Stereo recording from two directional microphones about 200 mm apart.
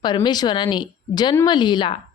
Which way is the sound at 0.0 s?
20° left (ahead or behind).